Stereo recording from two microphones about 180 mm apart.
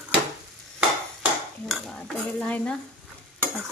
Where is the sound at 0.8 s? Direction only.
5° right (ahead or behind).